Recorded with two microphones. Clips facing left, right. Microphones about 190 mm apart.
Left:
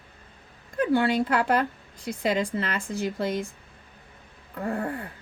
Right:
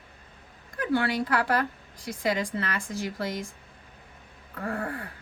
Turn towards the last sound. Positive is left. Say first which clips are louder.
# left 3 dB
turn(degrees=25)  # may be behind; listen again after turning